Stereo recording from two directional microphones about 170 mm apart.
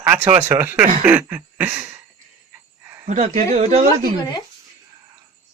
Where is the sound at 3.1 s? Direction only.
50° right (ahead or behind).